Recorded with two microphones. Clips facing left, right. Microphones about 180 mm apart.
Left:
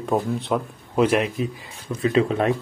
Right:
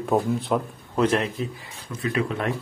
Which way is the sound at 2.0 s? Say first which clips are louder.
Left 6 dB; 25° left (ahead or behind).